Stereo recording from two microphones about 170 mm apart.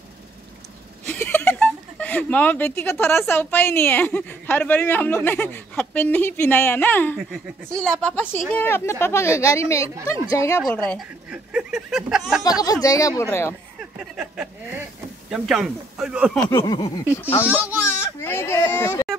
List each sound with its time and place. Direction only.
1.0 s a woman's voice: 10° left (ahead or behind)
11.2 s speech: 5° right (ahead or behind)
12.8 s a woman's voice: 20° left (ahead or behind)
13.9 s speech: 5° right (ahead or behind)
16.4 s a sound: 20° left (ahead or behind)
17.1 s a woman's voice: 15° left (ahead or behind)
17.4 s speech: 10° right (ahead or behind)
18.2 s a woman's voice: 15° left (ahead or behind)